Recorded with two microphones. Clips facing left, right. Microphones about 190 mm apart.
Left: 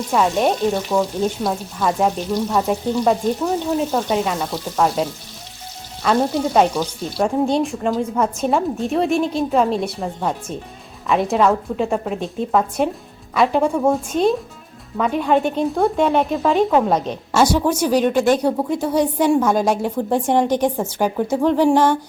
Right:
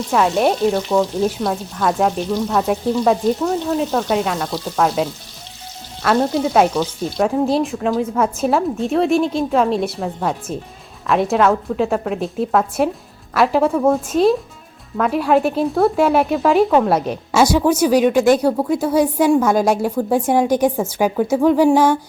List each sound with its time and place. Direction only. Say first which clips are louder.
0.1 s speech: right 1 dB; centre (ahead or behind)
2.3 s frying: right 1 dB; 5° left (ahead or behind)
2.6 s speech: right 3 dB; centre (ahead or behind)